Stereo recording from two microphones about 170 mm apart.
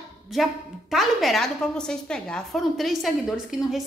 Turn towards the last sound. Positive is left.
turn(degrees=0)  # may be behind; listen again after turning